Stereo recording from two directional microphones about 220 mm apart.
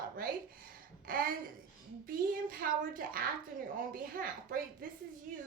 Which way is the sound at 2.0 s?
40° right (ahead or behind).